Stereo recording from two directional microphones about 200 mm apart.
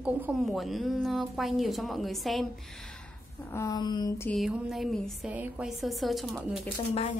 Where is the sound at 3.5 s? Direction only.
20° left (ahead or behind).